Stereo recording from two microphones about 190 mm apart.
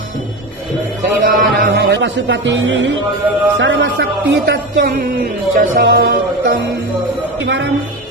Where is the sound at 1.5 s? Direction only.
65° right (ahead or behind).